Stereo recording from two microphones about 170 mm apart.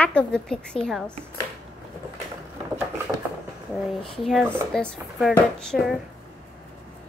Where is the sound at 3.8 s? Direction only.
Centre (ahead or behind).